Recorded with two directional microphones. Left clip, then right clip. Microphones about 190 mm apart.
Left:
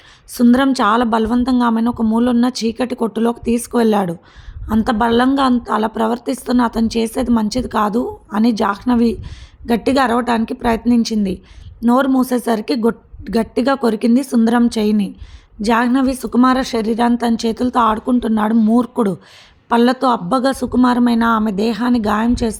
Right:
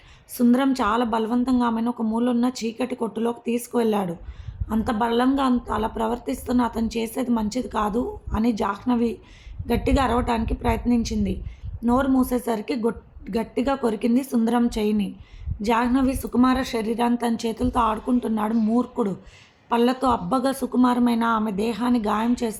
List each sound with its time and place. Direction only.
0.3 s a woman's voice: 45° left (ahead or behind)